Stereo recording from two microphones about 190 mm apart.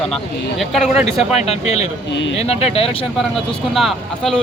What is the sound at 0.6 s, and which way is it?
Speech, centre (ahead or behind).